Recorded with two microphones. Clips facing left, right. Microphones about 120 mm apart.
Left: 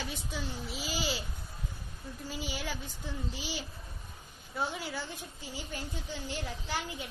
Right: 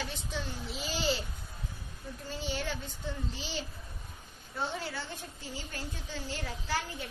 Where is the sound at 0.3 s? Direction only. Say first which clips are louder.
Even; 5° left (ahead or behind).